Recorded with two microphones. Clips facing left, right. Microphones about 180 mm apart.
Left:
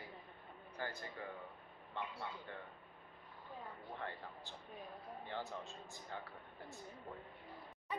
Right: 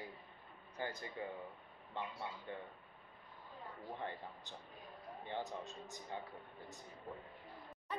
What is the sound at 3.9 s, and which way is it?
Speech, 20° right (ahead or behind).